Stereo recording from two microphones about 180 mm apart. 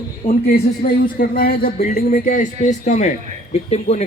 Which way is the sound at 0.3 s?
55° left (ahead or behind).